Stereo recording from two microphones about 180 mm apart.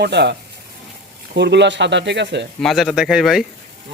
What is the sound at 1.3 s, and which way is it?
Speech, 70° right (ahead or behind).